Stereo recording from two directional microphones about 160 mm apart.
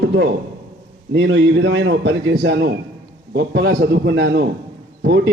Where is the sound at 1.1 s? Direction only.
90° right.